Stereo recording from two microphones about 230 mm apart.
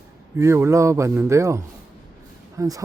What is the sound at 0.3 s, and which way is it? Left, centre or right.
Speech, centre.